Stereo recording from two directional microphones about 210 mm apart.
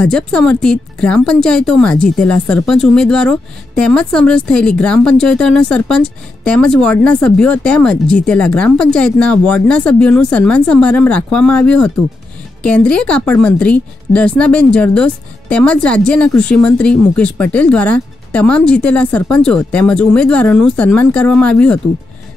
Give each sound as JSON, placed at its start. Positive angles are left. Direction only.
{"t": 0.0, "sound": "speech", "side_deg": 5}